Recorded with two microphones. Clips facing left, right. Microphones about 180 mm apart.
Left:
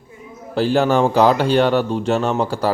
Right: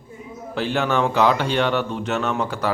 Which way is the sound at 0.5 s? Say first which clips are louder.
Left 6 dB; 35° left (ahead or behind).